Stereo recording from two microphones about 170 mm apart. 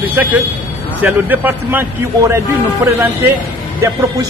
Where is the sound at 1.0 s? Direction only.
10° right (ahead or behind).